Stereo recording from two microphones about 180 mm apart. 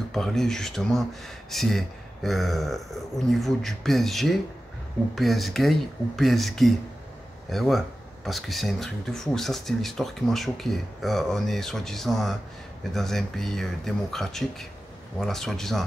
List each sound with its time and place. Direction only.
0.1 s speech: centre (ahead or behind)